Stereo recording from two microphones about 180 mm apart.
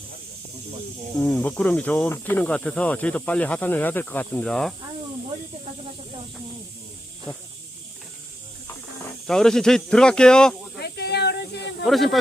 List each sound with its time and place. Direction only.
1.2 s speech: 5° left (ahead or behind)
9.2 s speech: centre (ahead or behind)
10.8 s snake: 65° left (ahead or behind)
11.9 s speech: centre (ahead or behind)